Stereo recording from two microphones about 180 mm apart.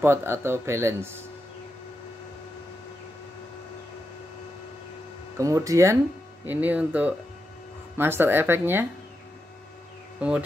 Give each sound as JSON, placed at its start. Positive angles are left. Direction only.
{"t": 0.0, "sound": "speech", "side_deg": -15}
{"t": 5.4, "sound": "speech", "side_deg": -15}